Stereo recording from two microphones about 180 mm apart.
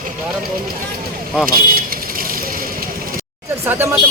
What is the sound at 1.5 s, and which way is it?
Vehicle, 55° right (ahead or behind).